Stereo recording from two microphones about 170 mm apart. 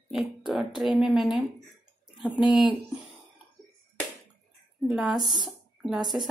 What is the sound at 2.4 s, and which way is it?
Speech, 25° left (ahead or behind).